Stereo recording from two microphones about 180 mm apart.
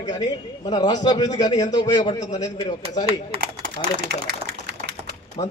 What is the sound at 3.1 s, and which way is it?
Speech, 35° right (ahead or behind).